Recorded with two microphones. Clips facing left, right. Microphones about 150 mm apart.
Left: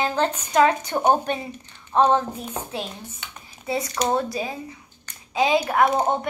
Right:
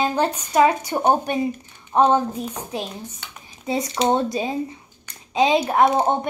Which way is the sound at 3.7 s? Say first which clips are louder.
Right 3 dB; 20° right (ahead or behind).